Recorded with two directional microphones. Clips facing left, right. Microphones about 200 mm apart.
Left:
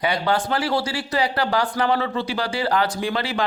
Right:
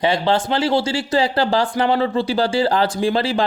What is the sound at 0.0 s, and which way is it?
Speech, 25° right (ahead or behind).